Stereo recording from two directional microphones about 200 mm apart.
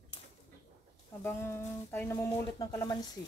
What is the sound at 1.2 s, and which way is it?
Speech, 10° left (ahead or behind).